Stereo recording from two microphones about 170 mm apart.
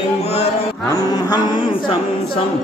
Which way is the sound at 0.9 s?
20° left (ahead or behind).